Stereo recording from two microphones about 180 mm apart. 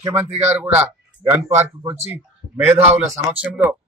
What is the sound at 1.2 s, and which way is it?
Speech, 15° right (ahead or behind).